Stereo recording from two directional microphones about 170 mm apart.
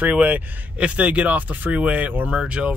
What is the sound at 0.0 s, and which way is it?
Speech, 10° right (ahead or behind).